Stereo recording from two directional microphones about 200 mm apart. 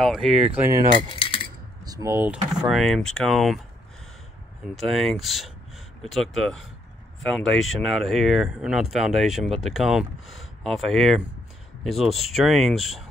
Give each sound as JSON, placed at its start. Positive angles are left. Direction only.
{"t": 0.0, "sound": "speech", "side_deg": 0}
{"t": 0.6, "sound": "coin", "side_deg": -15}
{"t": 1.0, "sound": "coin", "side_deg": 25}
{"t": 1.9, "sound": "speech", "side_deg": -15}
{"t": 2.7, "sound": "speech", "side_deg": 0}
{"t": 4.7, "sound": "speech", "side_deg": 0}